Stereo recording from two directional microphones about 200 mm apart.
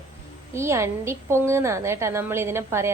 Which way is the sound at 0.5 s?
15° right (ahead or behind).